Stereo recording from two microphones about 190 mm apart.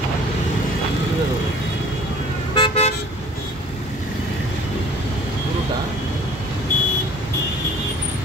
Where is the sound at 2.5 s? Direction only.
30° left (ahead or behind).